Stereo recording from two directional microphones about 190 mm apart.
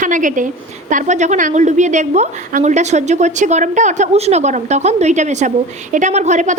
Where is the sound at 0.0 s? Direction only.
40° right (ahead or behind).